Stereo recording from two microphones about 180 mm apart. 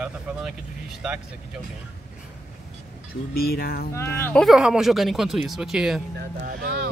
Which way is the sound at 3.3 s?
55° left (ahead or behind).